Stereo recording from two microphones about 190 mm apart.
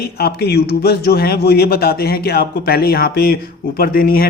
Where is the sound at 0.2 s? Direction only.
55° left (ahead or behind).